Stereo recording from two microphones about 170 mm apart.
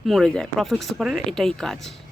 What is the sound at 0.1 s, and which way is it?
Speech, centre (ahead or behind).